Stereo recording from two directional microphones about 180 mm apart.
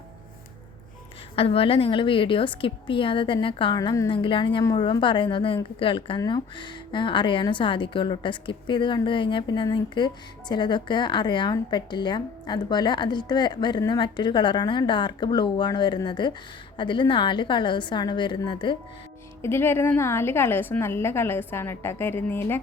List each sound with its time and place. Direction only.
1.4 s a woman's voice: 30° left (ahead or behind)
19.4 s a woman's voice: 15° left (ahead or behind)